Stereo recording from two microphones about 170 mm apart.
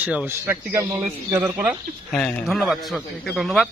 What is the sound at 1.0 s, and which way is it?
Speech, 5° right (ahead or behind).